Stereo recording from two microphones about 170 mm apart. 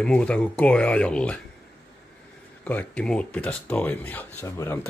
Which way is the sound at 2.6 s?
10° left (ahead or behind).